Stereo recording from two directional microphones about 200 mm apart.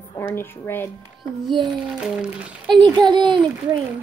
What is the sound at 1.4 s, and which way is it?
Speech, 20° right (ahead or behind).